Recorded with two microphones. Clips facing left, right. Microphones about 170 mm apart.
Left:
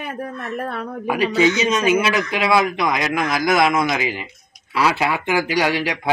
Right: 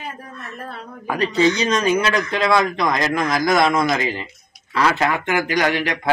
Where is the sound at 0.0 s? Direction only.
65° left (ahead or behind).